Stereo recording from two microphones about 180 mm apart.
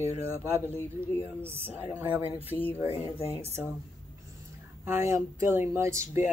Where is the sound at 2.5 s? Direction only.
20° left (ahead or behind).